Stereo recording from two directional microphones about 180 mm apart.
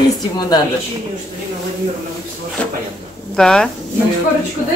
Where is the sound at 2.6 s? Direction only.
5° left (ahead or behind).